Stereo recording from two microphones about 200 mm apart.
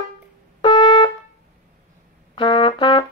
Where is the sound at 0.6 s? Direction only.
25° left (ahead or behind).